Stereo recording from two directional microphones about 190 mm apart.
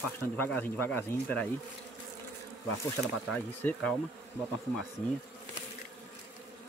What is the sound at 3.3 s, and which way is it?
Speech, 5° left (ahead or behind).